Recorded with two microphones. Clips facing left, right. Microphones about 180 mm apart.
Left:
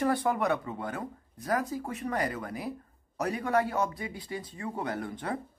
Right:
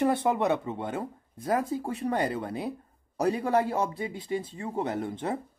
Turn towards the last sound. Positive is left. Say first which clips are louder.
# right 3 dB
turn(degrees=-25)  # may be behind; listen again after turning